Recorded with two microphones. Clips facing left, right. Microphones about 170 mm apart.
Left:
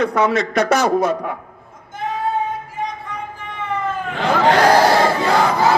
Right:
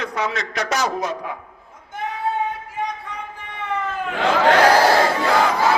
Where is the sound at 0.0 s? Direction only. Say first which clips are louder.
Left 8 dB; 55° left (ahead or behind).